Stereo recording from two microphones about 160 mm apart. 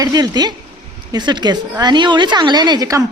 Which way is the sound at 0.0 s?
25° right (ahead or behind).